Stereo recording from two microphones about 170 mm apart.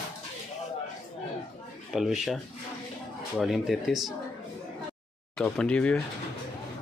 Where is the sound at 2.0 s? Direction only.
Centre (ahead or behind).